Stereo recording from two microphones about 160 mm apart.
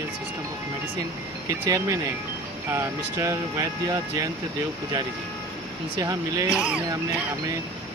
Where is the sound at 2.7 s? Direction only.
15° right (ahead or behind).